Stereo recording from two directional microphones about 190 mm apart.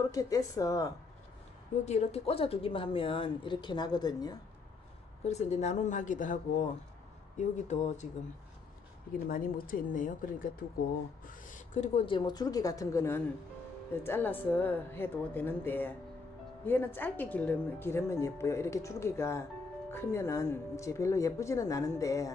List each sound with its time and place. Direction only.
0.0 s speech: 20° left (ahead or behind)
1.9 s speech: 35° left (ahead or behind)
5.2 s speech: 35° left (ahead or behind)
9.3 s speech: 45° left (ahead or behind)
11.2 s a sound: 45° left (ahead or behind)
12.1 s speech: 20° left (ahead or behind)